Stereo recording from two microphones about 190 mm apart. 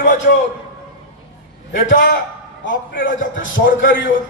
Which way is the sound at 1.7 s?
45° left (ahead or behind).